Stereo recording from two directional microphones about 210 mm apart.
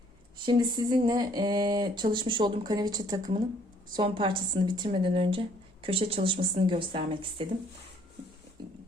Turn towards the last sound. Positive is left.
turn(degrees=-25)  # may be behind; listen again after turning